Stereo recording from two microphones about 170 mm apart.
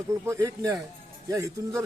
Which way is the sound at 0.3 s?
15° right (ahead or behind).